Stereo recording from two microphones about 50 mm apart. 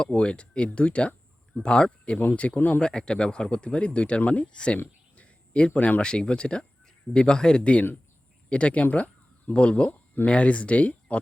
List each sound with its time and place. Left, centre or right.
0.0 s speech: left
2.6 s speech: left
2.8 s speech: centre
5.1 s a sound: left
6.0 s speech: centre